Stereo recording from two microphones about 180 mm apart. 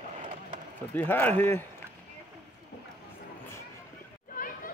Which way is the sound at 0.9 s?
10° left (ahead or behind).